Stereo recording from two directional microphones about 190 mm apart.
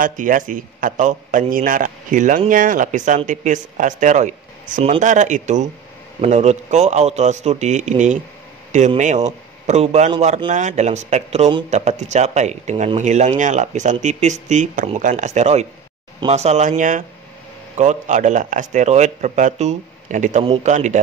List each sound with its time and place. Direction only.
0.0 s a man's voice: 45° right (ahead or behind)